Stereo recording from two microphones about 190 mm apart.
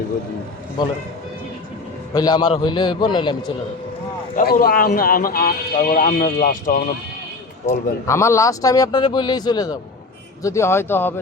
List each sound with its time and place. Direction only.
2.1 s a man's voice: 20° left (ahead or behind)
4.4 s a man's voice: 45° left (ahead or behind)
7.7 s a man's voice: 15° left (ahead or behind)